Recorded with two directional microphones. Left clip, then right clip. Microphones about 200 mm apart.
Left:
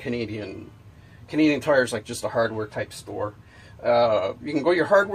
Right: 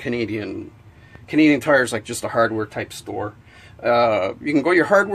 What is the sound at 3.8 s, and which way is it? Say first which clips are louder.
Speech: right 3 dB; 40° right (ahead or behind).